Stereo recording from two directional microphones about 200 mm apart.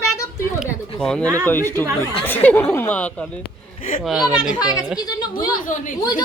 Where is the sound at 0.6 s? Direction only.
5° left (ahead or behind).